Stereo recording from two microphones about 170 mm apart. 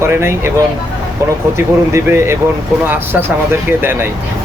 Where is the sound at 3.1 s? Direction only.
5° right (ahead or behind).